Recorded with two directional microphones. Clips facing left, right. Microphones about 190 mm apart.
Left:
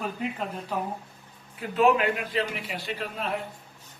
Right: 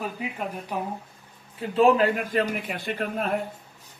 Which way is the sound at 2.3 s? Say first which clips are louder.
Right 4 dB; 50° right (ahead or behind).